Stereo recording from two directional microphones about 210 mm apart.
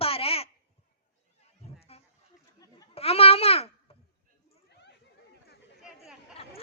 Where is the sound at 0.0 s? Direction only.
25° left (ahead or behind).